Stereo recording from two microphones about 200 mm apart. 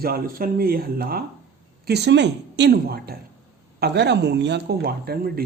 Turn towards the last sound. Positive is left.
turn(degrees=-50)  # may be behind; listen again after turning